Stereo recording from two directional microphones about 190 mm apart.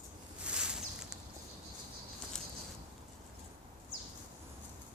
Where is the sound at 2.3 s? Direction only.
5° left (ahead or behind).